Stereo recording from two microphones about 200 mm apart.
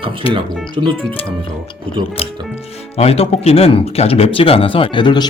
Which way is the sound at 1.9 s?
5° left (ahead or behind).